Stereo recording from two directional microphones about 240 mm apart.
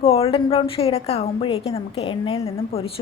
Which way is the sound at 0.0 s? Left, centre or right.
Left.